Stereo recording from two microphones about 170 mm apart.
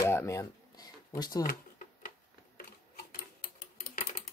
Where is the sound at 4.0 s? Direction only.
40° left (ahead or behind).